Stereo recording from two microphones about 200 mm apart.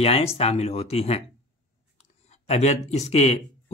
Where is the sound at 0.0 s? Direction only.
30° left (ahead or behind).